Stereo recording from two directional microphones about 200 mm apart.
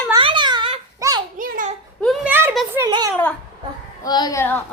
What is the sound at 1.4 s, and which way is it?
Speech, 45° right (ahead or behind).